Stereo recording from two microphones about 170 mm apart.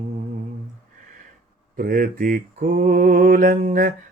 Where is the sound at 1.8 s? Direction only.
55° right (ahead or behind).